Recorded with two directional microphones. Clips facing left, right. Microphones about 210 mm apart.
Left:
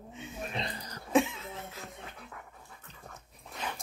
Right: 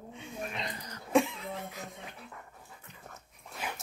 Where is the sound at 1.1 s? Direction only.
Centre (ahead or behind).